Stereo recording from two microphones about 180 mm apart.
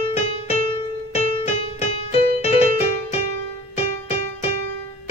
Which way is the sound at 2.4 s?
35° left (ahead or behind).